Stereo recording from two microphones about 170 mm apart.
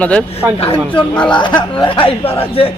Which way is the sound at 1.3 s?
30° left (ahead or behind).